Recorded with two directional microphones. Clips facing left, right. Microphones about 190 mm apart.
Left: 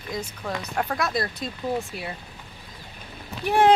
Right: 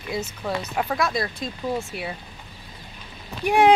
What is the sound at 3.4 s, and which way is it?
Speech, 15° right (ahead or behind).